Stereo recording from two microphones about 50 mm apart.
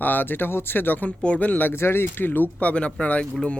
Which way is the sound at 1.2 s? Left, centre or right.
Left.